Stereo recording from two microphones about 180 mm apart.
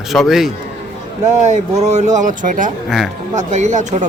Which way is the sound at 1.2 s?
40° right (ahead or behind).